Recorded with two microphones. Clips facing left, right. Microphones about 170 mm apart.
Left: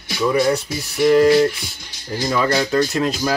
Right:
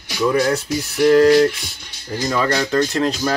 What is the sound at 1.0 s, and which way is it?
Speech, 10° left (ahead or behind).